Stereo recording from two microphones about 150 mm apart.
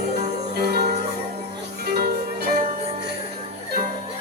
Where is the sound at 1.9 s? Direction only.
90° right.